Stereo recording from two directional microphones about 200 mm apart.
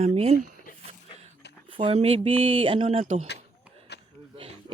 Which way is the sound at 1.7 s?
25° right (ahead or behind).